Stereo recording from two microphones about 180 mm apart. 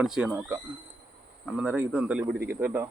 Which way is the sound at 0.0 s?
5° right (ahead or behind).